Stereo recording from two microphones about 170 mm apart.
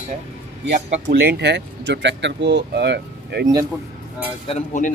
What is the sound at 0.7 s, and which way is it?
Speech, 50° right (ahead or behind).